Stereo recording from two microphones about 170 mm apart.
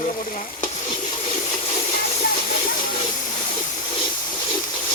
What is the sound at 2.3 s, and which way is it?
Steam, 35° left (ahead or behind).